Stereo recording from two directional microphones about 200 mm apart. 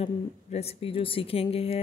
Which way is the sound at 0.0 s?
30° left (ahead or behind).